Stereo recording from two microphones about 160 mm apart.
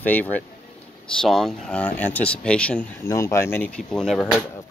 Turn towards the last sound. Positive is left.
turn(degrees=5)  # may be behind; listen again after turning